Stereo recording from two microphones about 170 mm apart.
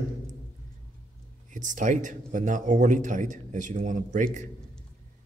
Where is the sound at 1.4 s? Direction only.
50° right (ahead or behind).